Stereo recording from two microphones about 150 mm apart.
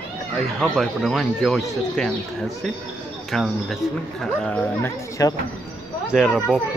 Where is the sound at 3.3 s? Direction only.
Centre (ahead or behind).